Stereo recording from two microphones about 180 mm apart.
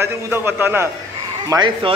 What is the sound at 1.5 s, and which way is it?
Speech, 25° right (ahead or behind).